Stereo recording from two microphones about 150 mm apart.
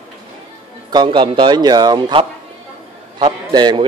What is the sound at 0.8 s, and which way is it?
A man's voice, 30° right (ahead or behind).